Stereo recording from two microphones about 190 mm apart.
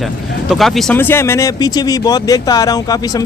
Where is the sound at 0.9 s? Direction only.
10° left (ahead or behind).